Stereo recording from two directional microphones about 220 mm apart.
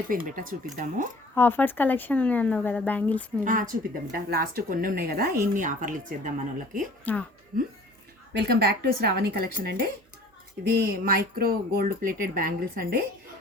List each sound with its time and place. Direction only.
0.1 s speech: 40° right (ahead or behind)
1.4 s speech: 10° left (ahead or behind)
3.4 s speech: 35° right (ahead or behind)
7.0 s speech: 5° left (ahead or behind)
8.3 s speech: 50° right (ahead or behind)